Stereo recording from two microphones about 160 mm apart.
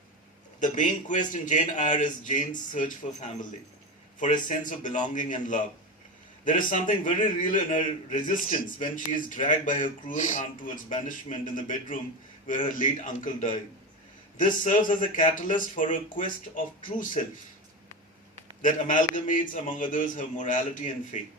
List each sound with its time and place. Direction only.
0.6 s a man's voice: 55° left (ahead or behind)
4.4 s a man's voice: 55° left (ahead or behind)
18.6 s a man's voice: 55° left (ahead or behind)